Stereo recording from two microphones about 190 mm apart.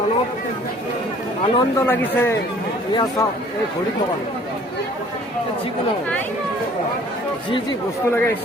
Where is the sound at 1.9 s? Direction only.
10° left (ahead or behind).